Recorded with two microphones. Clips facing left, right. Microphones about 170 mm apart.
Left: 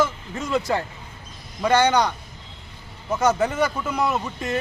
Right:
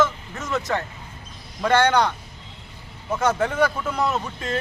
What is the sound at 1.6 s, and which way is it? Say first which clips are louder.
Speech: even; 5° left (ahead or behind).